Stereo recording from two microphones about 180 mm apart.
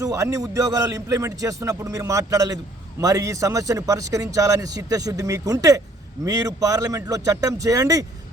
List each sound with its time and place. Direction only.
0.0 s speech: 15° right (ahead or behind)